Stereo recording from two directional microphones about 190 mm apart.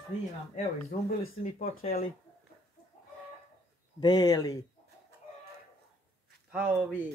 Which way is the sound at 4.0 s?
20° left (ahead or behind).